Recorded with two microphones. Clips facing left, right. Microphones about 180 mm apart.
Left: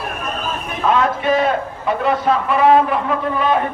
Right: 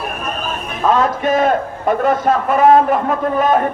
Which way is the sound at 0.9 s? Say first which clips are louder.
Right 1 dB; 45° right (ahead or behind).